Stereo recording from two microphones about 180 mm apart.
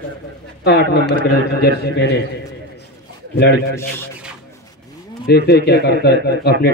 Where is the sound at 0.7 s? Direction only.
65° left (ahead or behind).